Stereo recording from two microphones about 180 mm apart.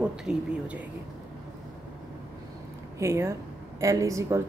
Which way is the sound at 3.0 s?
15° right (ahead or behind).